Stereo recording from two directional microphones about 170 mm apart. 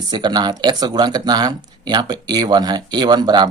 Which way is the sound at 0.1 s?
25° right (ahead or behind).